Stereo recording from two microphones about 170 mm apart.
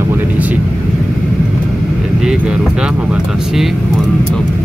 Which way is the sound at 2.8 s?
5° right (ahead or behind).